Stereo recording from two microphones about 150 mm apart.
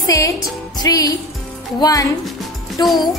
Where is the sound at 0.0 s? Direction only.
20° left (ahead or behind).